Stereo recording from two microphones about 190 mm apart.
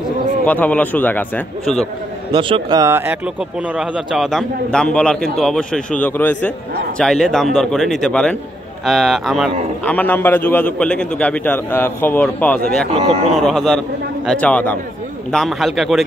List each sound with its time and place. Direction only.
0.5 s a man's voice: 10° left (ahead or behind)
2.3 s a man's voice: 25° right (ahead or behind); by 12.8 s 10° left (ahead or behind)
12.9 s speech: 30° right (ahead or behind)
13.3 s speech: centre (ahead or behind)